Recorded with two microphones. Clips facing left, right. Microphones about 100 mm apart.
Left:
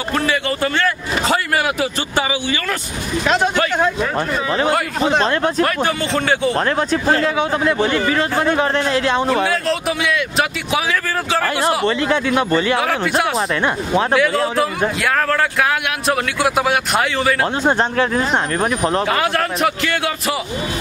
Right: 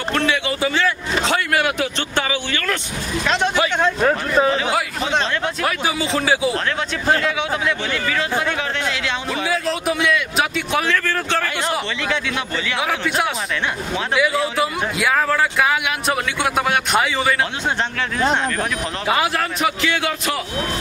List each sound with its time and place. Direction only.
0.1 s speech: centre (ahead or behind)
5.2 s a man's voice: 40° left (ahead or behind)
5.6 s speech: 5° right (ahead or behind)
6.5 s a man's voice: 35° left (ahead or behind)
9.5 s speech: centre (ahead or behind)
11.8 s speech: 40° left (ahead or behind)
14.1 s speech: 5° right (ahead or behind)
17.6 s a man's voice: 40° left (ahead or behind)
19.0 s speech: 5° right (ahead or behind)